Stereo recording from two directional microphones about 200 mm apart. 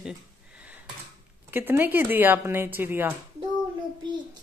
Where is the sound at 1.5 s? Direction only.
10° right (ahead or behind).